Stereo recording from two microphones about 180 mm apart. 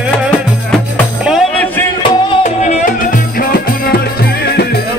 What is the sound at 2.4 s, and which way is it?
Music, 40° left (ahead or behind).